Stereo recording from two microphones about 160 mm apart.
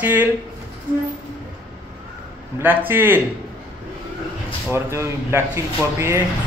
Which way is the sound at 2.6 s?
15° right (ahead or behind).